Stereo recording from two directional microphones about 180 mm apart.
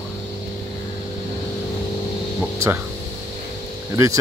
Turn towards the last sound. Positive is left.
turn(degrees=-20)  # may be behind; listen again after turning